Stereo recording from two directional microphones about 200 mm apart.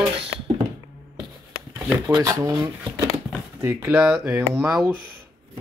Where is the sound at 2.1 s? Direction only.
15° right (ahead or behind).